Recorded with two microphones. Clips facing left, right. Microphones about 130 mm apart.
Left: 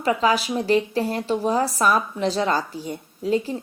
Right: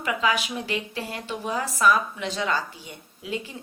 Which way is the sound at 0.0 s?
35° left (ahead or behind).